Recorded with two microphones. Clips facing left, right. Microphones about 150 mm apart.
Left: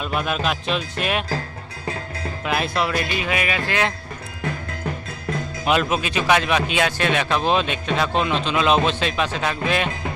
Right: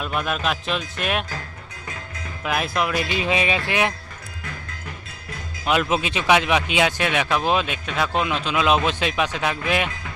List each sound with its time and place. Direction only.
0.0 s speech: centre (ahead or behind)
2.4 s speech: centre (ahead or behind)
3.1 s speech: 25° right (ahead or behind)
5.9 s speech: 20° right (ahead or behind)